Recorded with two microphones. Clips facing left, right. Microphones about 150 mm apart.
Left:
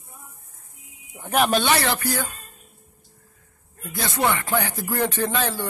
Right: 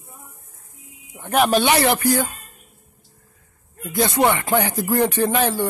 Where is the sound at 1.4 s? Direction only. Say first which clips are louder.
Right 6 dB; 10° right (ahead or behind).